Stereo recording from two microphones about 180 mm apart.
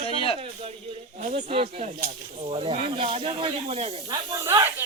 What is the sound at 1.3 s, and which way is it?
Speech, 40° right (ahead or behind).